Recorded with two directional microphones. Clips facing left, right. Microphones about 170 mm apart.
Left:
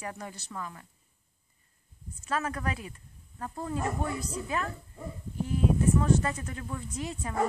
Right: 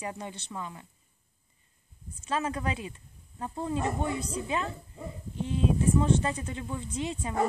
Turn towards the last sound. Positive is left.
turn(degrees=-15)  # may be behind; listen again after turning